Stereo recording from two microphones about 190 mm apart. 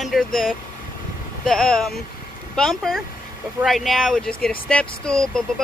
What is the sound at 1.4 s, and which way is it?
Speech, 5° left (ahead or behind).